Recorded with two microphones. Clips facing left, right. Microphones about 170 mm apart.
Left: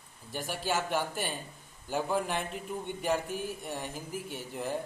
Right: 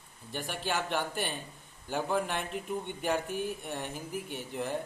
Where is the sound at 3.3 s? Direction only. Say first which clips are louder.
Right 2 dB; 55° right (ahead or behind).